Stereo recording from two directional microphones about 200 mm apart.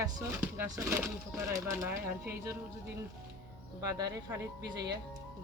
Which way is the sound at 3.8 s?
20° right (ahead or behind).